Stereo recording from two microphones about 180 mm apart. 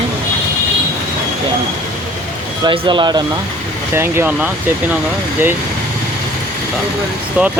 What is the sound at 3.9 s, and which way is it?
Speech, 15° right (ahead or behind).